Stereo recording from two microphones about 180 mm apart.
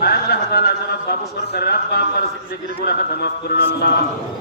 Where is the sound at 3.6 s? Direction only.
60° left (ahead or behind).